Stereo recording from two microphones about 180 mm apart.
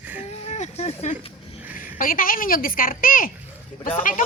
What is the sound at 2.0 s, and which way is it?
Speech, 50° left (ahead or behind).